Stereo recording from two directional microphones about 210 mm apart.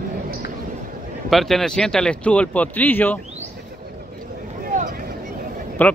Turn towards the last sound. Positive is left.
turn(degrees=10)  # may be behind; listen again after turning